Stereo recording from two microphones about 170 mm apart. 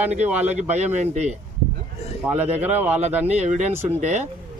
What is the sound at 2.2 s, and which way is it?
Speech, 10° right (ahead or behind).